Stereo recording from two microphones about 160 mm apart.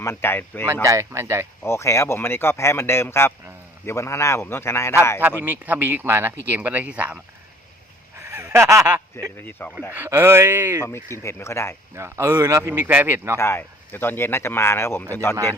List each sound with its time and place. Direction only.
0.0 s speech: 15° left (ahead or behind)
0.9 s speech: 20° right (ahead or behind)
1.6 s speech: 15° left (ahead or behind)
5.4 s speech: 10° right (ahead or behind)
8.2 s a sound: 15° right (ahead or behind)
9.4 s speech: 10° left (ahead or behind)
9.9 s speech: 15° right (ahead or behind)
11.2 s speech: 15° left (ahead or behind)
11.9 s speech: 15° right (ahead or behind)
13.3 s speech: 15° left (ahead or behind)